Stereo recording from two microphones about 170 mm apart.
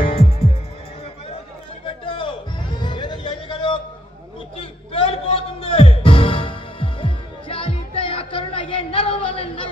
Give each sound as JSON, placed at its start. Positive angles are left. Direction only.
{"t": 0.0, "sound": "music", "side_deg": 35}
{"t": 1.9, "sound": "music", "side_deg": 30}